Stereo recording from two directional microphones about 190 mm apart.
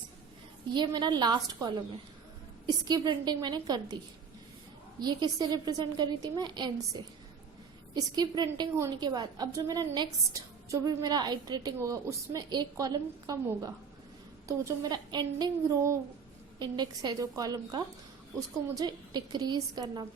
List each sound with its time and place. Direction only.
0.7 s a woman's voice: 25° right (ahead or behind)
2.6 s a woman's voice: 20° right (ahead or behind)
4.9 s a woman's voice: 20° right (ahead or behind)